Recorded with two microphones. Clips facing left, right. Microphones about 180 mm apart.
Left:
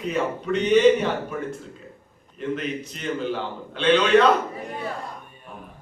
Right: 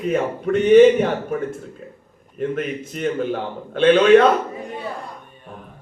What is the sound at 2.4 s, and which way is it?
A man's voice, 50° right (ahead or behind).